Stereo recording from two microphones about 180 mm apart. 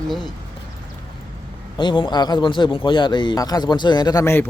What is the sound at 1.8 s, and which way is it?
A man's voice, 25° left (ahead or behind).